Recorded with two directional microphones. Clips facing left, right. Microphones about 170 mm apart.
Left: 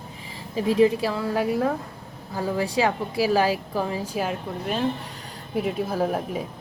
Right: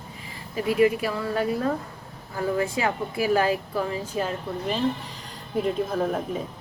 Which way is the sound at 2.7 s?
90° left.